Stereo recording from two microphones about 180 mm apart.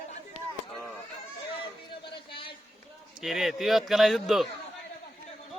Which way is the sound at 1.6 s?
25° left (ahead or behind).